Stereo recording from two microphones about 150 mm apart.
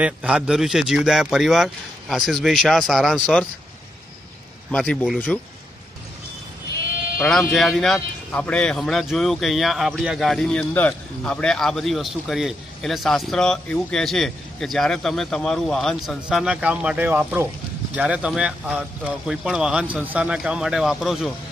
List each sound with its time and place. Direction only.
0.0 s a man's voice: 5° right (ahead or behind)
4.6 s a man's voice: 5° left (ahead or behind)
7.2 s a man's voice: centre (ahead or behind)